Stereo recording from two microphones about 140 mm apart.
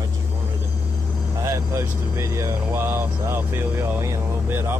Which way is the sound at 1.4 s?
20° right (ahead or behind).